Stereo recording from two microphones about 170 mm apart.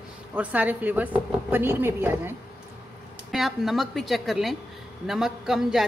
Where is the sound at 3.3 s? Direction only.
Centre (ahead or behind).